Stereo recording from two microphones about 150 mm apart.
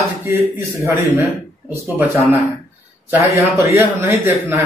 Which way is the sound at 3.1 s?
15° right (ahead or behind).